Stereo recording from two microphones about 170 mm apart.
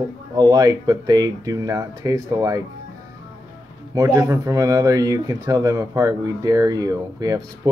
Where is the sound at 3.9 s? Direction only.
20° right (ahead or behind).